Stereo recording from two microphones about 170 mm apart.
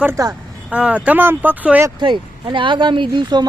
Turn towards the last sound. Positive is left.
turn(degrees=-25)  # may be behind; listen again after turning